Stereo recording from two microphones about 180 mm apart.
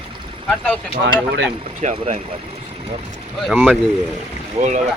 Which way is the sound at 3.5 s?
Centre (ahead or behind).